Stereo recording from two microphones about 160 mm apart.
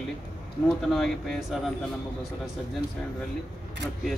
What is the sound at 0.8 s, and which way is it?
Speech, centre (ahead or behind).